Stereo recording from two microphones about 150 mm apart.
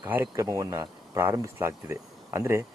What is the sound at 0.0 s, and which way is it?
Speech, 15° right (ahead or behind).